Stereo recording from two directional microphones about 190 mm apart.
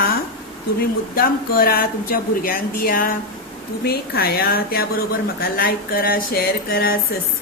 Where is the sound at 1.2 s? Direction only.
50° left (ahead or behind).